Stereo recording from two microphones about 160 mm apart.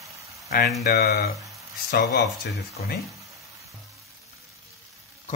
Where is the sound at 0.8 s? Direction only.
80° left.